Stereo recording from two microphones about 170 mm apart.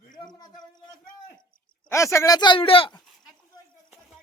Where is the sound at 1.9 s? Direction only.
15° left (ahead or behind).